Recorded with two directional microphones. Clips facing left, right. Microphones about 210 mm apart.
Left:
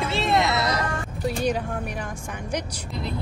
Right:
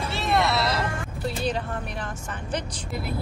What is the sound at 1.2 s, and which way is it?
Speech, 10° left (ahead or behind).